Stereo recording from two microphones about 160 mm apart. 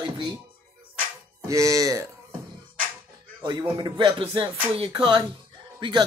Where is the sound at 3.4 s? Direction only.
30° right (ahead or behind).